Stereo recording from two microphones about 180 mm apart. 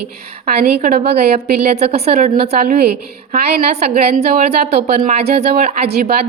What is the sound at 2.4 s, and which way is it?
A woman's voice, 50° right (ahead or behind).